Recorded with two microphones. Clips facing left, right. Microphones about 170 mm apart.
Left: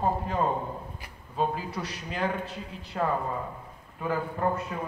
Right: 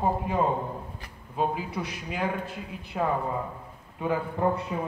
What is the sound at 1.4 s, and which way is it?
A man's voice, 10° right (ahead or behind).